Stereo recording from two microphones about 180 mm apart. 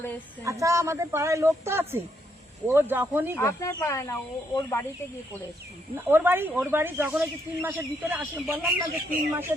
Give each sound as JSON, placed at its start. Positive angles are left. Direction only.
{"t": 0.4, "sound": "speech", "side_deg": -15}
{"t": 3.3, "sound": "speech", "side_deg": 15}
{"t": 6.1, "sound": "speech", "side_deg": -10}
{"t": 8.9, "sound": "speech", "side_deg": -55}
{"t": 9.3, "sound": "speech", "side_deg": -10}